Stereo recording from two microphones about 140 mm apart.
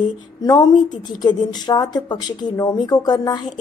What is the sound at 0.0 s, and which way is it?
A woman's voice, 30° left (ahead or behind).